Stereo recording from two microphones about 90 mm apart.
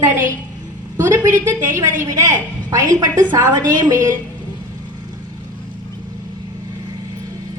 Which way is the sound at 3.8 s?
35° right (ahead or behind).